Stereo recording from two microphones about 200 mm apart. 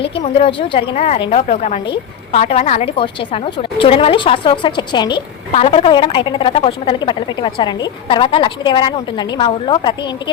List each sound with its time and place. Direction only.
0.2 s a woman's voice: 25° left (ahead or behind)